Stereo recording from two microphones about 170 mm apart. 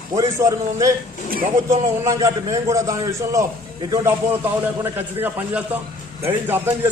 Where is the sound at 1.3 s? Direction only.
55° right (ahead or behind).